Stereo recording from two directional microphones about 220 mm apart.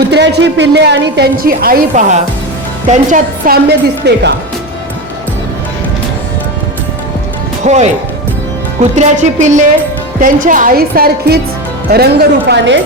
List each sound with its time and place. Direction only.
0.1 s a woman's voice: 50° right (ahead or behind)
7.6 s speech: 30° right (ahead or behind)
9.0 s a woman's voice: 35° right (ahead or behind); by 12.8 s 55° right (ahead or behind)